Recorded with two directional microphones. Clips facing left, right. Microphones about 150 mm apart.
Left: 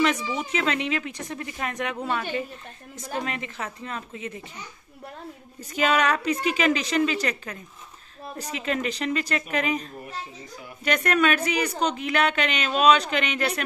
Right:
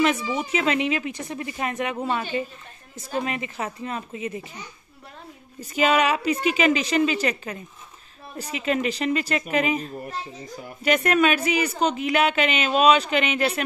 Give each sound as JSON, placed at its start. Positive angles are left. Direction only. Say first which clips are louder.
{"t": 0.0, "sound": "speech", "louder": "right 2 dB", "side_deg": -5}
{"t": 3.3, "sound": "speech", "louder": "right 3 dB", "side_deg": -10}
{"t": 5.8, "sound": "a woman's voice", "louder": "right 2 dB", "side_deg": -10}